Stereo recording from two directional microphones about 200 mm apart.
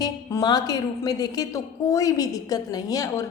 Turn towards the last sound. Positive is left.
turn(degrees=15)  # may be behind; listen again after turning